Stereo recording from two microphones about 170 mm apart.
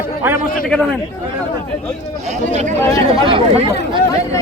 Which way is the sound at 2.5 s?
45° right (ahead or behind).